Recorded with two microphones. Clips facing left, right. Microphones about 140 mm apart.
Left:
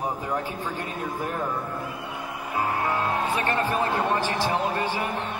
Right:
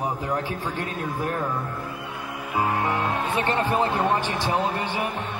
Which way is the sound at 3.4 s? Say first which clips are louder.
Right 2 dB; 15° right (ahead or behind).